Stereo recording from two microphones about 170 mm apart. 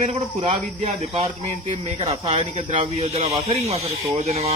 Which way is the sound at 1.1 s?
35° right (ahead or behind).